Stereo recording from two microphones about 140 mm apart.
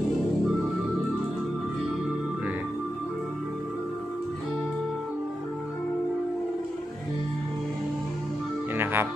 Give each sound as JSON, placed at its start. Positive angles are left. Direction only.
{"t": 8.7, "sound": "music", "side_deg": -15}